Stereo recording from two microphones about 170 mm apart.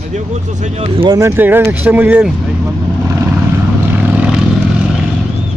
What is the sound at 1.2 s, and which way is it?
Speech, 15° right (ahead or behind).